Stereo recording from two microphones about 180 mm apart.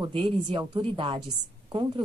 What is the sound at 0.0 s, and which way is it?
Speech, 25° right (ahead or behind).